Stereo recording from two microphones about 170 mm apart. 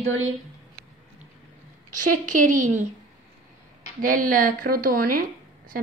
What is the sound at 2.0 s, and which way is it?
Speech, 50° right (ahead or behind).